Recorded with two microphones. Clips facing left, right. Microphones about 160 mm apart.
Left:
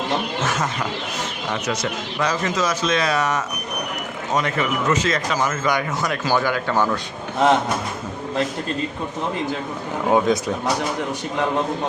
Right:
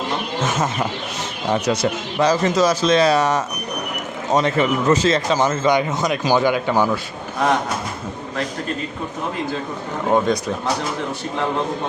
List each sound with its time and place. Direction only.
0.4 s a man's voice: 25° right (ahead or behind)
10.1 s speech: 5° left (ahead or behind)